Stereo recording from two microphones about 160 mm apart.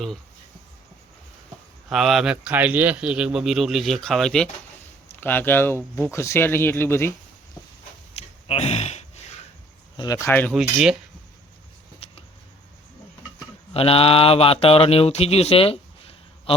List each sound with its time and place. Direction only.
1.9 s speech: centre (ahead or behind); by 7.1 s 15° left (ahead or behind)
8.1 s a sound: 40° left (ahead or behind)
10.0 s speech: 20° left (ahead or behind)
10.5 s speech: centre (ahead or behind)
13.7 s speech: 35° left (ahead or behind)